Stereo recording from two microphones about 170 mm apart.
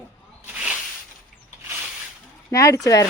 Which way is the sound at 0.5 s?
5° right (ahead or behind).